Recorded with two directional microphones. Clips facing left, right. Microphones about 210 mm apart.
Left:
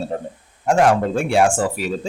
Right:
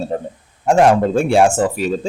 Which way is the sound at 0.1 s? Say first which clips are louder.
Right 3 dB; 30° right (ahead or behind).